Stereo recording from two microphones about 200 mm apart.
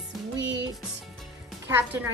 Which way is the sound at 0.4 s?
65° right (ahead or behind).